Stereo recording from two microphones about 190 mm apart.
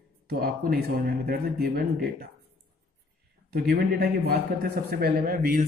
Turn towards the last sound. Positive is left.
turn(degrees=-50)  # may be behind; listen again after turning